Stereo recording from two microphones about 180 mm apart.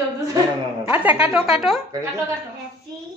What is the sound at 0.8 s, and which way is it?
A woman's voice, 10° right (ahead or behind).